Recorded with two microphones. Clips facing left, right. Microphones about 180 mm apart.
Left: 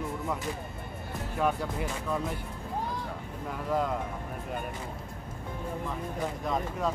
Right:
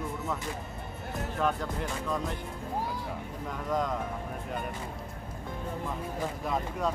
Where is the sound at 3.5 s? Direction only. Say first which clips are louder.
Left 1 dB; 5° left (ahead or behind).